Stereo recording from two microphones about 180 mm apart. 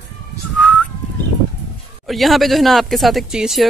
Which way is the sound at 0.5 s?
5° left (ahead or behind).